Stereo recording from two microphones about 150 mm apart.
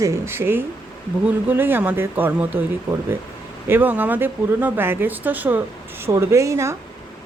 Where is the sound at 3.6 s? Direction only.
15° right (ahead or behind).